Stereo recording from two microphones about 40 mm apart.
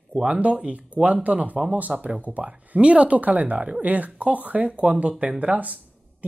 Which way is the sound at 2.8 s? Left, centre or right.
Right.